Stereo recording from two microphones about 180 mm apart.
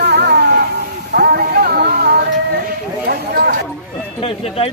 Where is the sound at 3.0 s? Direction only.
60° right (ahead or behind).